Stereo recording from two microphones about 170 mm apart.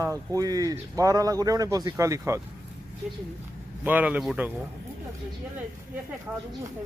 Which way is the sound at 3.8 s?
10° right (ahead or behind).